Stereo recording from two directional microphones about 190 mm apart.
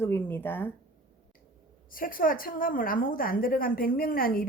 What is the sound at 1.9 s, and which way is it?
A woman's voice, 50° left (ahead or behind).